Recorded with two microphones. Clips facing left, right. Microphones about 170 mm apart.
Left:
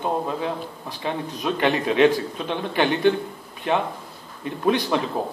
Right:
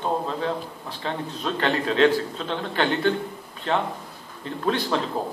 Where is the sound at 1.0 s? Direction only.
15° left (ahead or behind).